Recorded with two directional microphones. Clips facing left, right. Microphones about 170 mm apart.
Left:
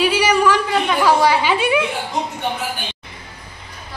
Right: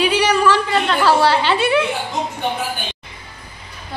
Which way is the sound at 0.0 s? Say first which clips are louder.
Even; 10° left (ahead or behind).